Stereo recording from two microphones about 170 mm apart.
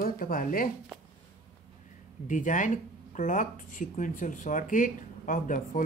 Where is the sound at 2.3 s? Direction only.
50° left (ahead or behind).